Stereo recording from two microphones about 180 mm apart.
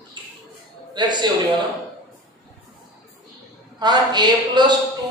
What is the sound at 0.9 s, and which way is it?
Speech, 25° right (ahead or behind).